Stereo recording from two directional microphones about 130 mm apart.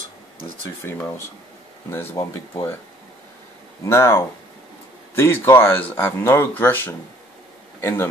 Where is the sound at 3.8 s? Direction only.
20° left (ahead or behind).